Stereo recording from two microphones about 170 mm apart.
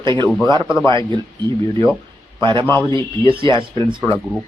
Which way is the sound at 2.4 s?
30° right (ahead or behind).